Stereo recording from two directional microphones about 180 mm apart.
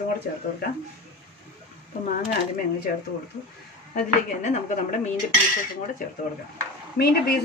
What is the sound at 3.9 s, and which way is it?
Speech, 40° left (ahead or behind).